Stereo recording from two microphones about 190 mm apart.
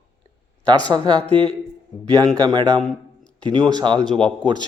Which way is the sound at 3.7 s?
25° right (ahead or behind).